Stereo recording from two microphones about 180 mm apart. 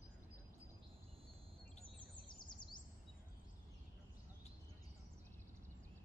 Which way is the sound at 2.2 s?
25° left (ahead or behind).